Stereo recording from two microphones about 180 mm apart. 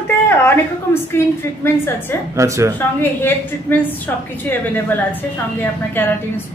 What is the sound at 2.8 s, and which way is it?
A woman's voice, 10° left (ahead or behind).